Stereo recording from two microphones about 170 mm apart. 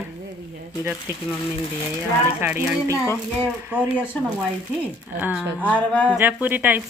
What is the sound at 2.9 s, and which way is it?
Music, 15° left (ahead or behind).